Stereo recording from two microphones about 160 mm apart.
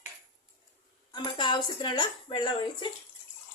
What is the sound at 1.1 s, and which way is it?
Speech, 30° left (ahead or behind).